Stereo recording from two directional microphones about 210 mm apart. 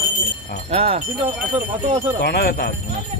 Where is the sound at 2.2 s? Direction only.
50° left (ahead or behind).